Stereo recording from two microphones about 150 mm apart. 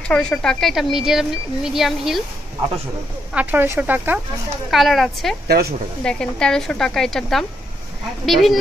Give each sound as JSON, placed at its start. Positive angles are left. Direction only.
{"t": 0.1, "sound": "speech", "side_deg": 5}
{"t": 3.3, "sound": "speech", "side_deg": -15}
{"t": 4.6, "sound": "speech", "side_deg": 0}
{"t": 5.5, "sound": "speech", "side_deg": -90}
{"t": 6.0, "sound": "speech", "side_deg": 5}